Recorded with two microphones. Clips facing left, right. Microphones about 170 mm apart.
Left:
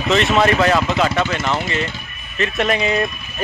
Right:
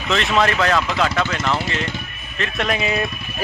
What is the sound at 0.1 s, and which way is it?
Speech, 5° left (ahead or behind).